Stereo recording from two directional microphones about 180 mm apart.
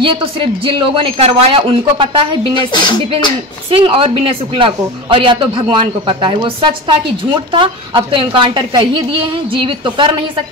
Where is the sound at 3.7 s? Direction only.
30° right (ahead or behind).